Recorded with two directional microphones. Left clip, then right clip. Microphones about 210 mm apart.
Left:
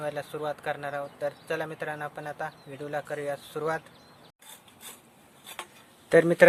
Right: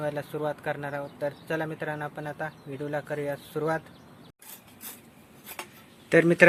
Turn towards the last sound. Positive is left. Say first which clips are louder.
# even
turn(degrees=20)  # may be behind; listen again after turning